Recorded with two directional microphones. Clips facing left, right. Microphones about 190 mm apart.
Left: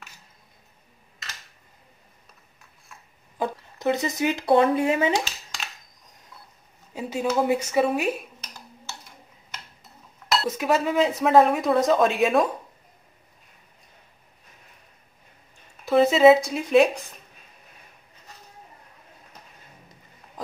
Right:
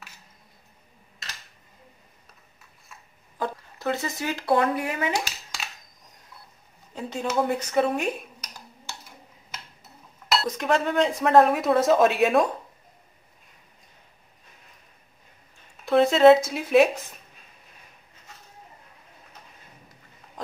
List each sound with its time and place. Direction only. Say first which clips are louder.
2.9 s dog: even; centre (ahead or behind)
3.3 s speech: left 2 dB; 15° left (ahead or behind)
6.9 s a woman's voice: left 3 dB; 10° left (ahead or behind)
10.5 s speech: left 1 dB; 5° left (ahead or behind)
15.8 s speech: even; centre (ahead or behind)
20.4 s pig: left 1 dB; centre (ahead or behind)